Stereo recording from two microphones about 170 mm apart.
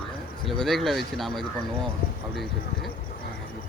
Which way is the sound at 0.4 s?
Centre (ahead or behind).